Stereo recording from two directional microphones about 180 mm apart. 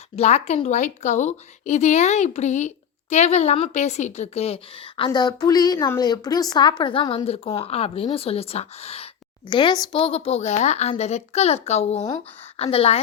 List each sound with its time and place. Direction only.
0.2 s a woman's voice: 40° left (ahead or behind)